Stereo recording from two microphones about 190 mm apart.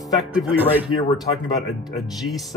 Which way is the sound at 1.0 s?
20° left (ahead or behind).